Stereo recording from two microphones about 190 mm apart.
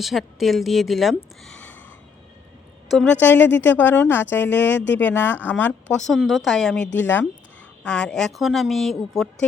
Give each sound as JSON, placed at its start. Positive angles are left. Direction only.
{"t": 0.0, "sound": "a woman's voice", "side_deg": 0}
{"t": 2.9, "sound": "a woman's voice", "side_deg": 5}
{"t": 6.8, "sound": "speech", "side_deg": 70}
{"t": 7.9, "sound": "a woman's voice", "side_deg": 5}